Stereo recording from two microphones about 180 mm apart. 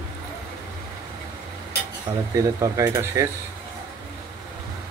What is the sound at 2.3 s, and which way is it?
Speech, 15° right (ahead or behind).